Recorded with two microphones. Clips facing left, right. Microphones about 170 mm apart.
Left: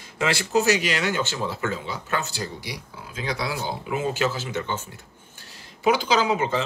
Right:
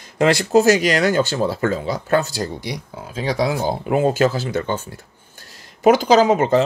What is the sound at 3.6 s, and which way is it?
Speech, 55° right (ahead or behind).